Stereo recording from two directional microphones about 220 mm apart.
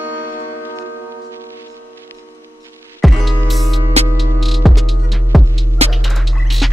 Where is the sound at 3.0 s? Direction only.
Centre (ahead or behind).